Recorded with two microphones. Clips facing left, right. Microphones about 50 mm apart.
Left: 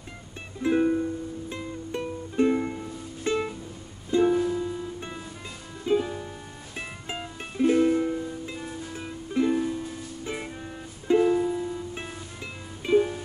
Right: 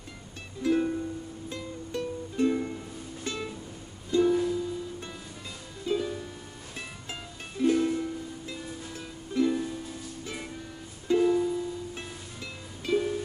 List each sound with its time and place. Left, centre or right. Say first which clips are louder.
0.6 s music: left 4 dB; left